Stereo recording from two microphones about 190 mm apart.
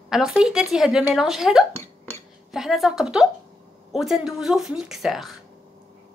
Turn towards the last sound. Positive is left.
turn(degrees=0)  # may be behind; listen again after turning